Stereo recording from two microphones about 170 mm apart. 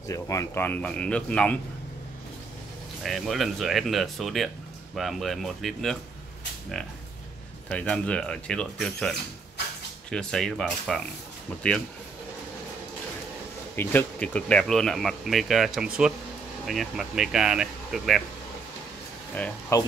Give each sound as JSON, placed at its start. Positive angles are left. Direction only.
{"t": 0.1, "sound": "speech", "side_deg": 20}
{"t": 3.0, "sound": "speech", "side_deg": 0}
{"t": 7.7, "sound": "speech", "side_deg": 5}
{"t": 13.7, "sound": "speech", "side_deg": 10}
{"t": 19.7, "sound": "speech", "side_deg": 20}